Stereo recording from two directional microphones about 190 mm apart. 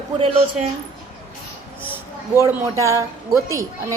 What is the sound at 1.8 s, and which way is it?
A woman's voice, 10° right (ahead or behind).